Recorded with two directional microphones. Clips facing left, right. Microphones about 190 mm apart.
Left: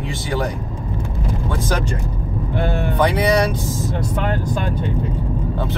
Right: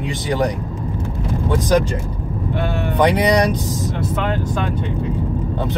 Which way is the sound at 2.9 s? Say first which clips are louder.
Right 2 dB; 15° right (ahead or behind).